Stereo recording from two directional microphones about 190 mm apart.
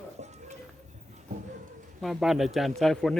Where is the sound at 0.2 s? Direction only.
35° right (ahead or behind).